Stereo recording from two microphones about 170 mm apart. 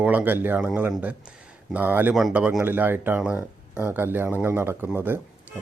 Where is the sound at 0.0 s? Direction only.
10° right (ahead or behind).